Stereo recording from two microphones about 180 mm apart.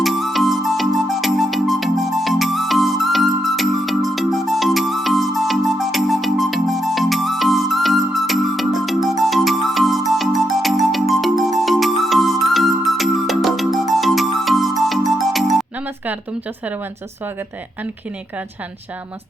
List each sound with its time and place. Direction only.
0.0 s music: centre (ahead or behind)